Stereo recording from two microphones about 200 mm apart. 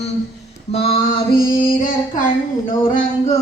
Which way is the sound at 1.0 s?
45° left (ahead or behind).